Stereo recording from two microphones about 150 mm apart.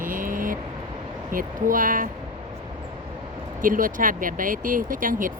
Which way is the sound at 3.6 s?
65° right (ahead or behind).